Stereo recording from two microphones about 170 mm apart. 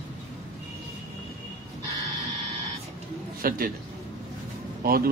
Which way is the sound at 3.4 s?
60° right (ahead or behind).